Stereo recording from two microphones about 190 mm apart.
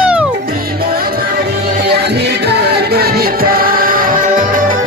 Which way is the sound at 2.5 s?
60° right (ahead or behind).